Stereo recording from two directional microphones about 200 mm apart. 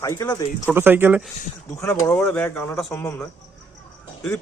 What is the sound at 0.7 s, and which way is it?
Speech, 10° right (ahead or behind).